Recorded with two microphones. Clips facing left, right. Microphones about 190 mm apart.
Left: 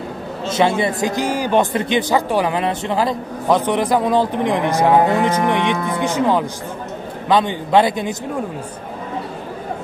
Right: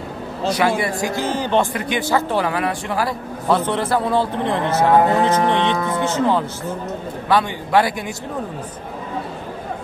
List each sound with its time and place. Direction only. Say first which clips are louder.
0.5 s a man's voice: left 2 dB; 25° left (ahead or behind)
1.7 s a man's voice: left 3 dB; 25° left (ahead or behind)